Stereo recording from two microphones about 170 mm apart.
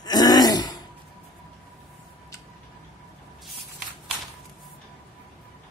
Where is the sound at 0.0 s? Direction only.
20° left (ahead or behind).